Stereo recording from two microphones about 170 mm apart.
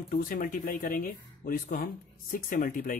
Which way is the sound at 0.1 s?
55° left (ahead or behind).